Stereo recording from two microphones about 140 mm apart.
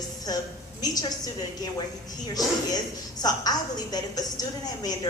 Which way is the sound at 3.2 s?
30° left (ahead or behind).